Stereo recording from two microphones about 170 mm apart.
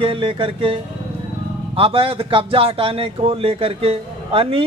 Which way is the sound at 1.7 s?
35° right (ahead or behind).